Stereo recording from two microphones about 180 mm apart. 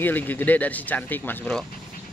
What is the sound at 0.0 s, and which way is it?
Speech, 10° left (ahead or behind).